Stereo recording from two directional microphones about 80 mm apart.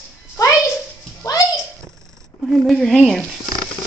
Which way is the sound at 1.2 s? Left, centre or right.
Left.